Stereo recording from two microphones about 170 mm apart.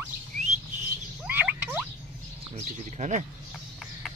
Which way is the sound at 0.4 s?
45° right (ahead or behind).